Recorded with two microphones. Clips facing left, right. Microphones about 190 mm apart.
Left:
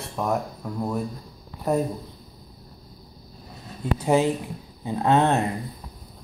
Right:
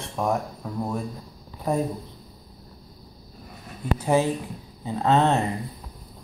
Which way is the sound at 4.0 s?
20° left (ahead or behind).